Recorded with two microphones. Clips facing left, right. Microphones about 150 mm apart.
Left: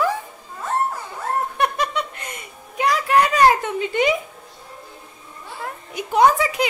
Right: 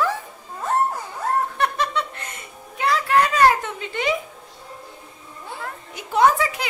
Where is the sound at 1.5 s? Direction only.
15° left (ahead or behind).